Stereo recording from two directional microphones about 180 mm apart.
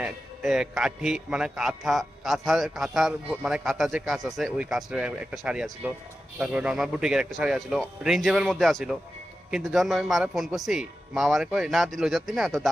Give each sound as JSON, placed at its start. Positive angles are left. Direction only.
{"t": 0.0, "sound": "a man's voice", "side_deg": -5}